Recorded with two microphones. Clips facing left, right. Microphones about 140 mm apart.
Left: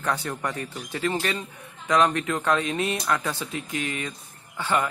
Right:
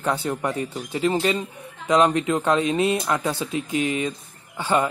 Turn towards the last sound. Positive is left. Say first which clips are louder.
# right 4 dB
turn(degrees=-20)  # may be behind; listen again after turning